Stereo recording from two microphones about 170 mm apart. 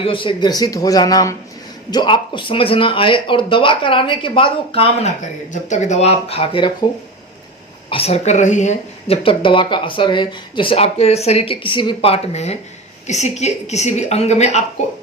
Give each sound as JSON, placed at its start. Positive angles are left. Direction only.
{"t": 0.0, "sound": "speech", "side_deg": 30}
{"t": 5.5, "sound": "speech", "side_deg": 45}
{"t": 7.9, "sound": "speech", "side_deg": 35}